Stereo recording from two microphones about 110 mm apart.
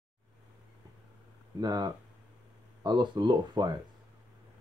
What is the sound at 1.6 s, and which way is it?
Speech, 35° right (ahead or behind).